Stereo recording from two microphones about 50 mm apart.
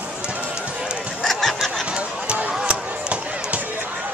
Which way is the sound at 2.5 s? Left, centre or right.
Centre.